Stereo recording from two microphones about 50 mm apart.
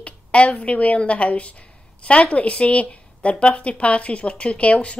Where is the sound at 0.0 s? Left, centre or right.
Left.